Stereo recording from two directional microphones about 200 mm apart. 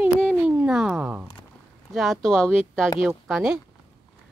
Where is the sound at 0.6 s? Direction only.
5° right (ahead or behind).